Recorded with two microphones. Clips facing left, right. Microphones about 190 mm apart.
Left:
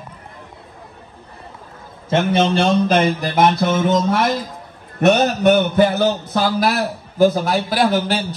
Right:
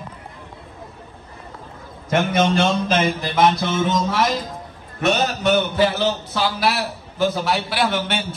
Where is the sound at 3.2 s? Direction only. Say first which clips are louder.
Left 2 dB; 55° left (ahead or behind).